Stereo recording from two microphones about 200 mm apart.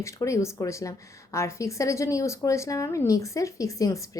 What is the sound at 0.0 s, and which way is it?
A woman's voice, 15° left (ahead or behind).